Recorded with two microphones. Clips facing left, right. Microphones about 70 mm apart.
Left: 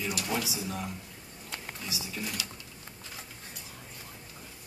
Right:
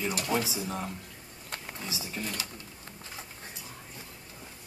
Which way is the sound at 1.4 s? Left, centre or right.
Right.